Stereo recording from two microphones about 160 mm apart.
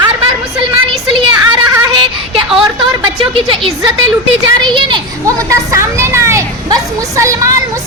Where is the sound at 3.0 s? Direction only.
30° right (ahead or behind).